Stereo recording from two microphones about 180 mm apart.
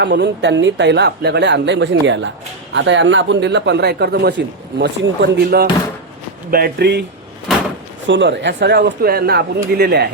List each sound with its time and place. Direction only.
0.0 s speech: 80° right
8.0 s speech: 85° right; by 10.1 s 65° right (ahead or behind)